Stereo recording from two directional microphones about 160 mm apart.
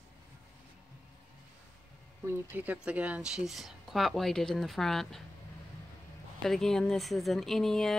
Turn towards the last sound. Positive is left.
turn(degrees=0)  # may be behind; listen again after turning